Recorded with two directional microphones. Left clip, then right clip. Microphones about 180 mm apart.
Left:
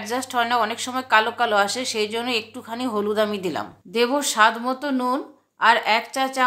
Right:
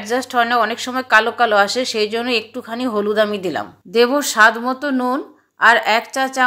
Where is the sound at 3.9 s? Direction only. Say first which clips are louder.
Right 6 dB; 20° right (ahead or behind).